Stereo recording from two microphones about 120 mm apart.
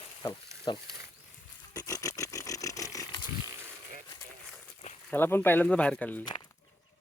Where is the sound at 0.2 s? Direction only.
40° left (ahead or behind).